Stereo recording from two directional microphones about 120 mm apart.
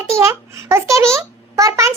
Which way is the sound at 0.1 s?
25° right (ahead or behind).